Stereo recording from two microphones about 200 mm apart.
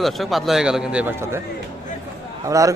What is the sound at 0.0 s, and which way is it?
Moo, centre (ahead or behind).